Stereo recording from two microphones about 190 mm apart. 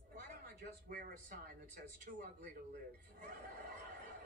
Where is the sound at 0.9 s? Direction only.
45° right (ahead or behind).